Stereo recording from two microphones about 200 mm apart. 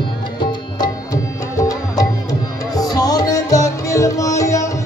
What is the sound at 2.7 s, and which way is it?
Music, 20° left (ahead or behind).